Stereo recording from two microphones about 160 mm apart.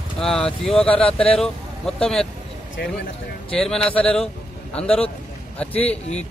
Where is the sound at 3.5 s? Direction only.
5° left (ahead or behind).